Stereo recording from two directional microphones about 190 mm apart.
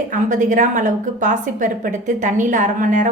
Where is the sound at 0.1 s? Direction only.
40° right (ahead or behind).